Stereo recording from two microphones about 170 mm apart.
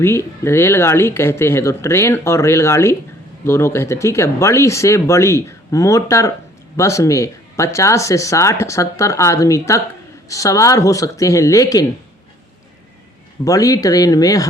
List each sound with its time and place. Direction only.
0.0 s speech: 15° left (ahead or behind)
13.4 s speech: 20° left (ahead or behind)